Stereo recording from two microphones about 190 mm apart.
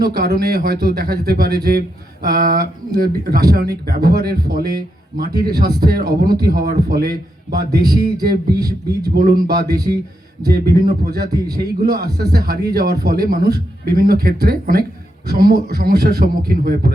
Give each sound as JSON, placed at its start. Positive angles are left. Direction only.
{"t": 0.0, "sound": "a man's voice", "side_deg": -55}
{"t": 8.5, "sound": "a man's voice", "side_deg": -20}
{"t": 9.0, "sound": "a man's voice", "side_deg": -50}
{"t": 11.2, "sound": "a man's voice", "side_deg": -20}
{"t": 11.5, "sound": "a man's voice", "side_deg": -55}